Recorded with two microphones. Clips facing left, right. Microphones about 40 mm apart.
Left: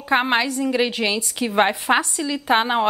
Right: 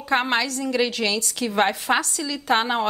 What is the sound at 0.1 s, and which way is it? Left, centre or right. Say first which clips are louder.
A woman's voice: left 3 dB; centre.